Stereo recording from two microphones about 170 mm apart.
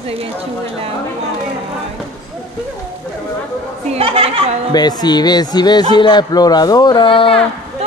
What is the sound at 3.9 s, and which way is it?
Speech, 35° right (ahead or behind).